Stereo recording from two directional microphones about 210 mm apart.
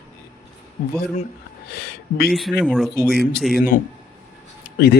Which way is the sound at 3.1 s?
50° left (ahead or behind).